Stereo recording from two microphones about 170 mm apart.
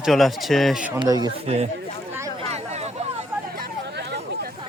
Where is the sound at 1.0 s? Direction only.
25° right (ahead or behind).